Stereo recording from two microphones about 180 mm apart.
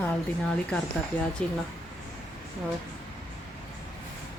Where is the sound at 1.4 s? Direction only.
5° left (ahead or behind).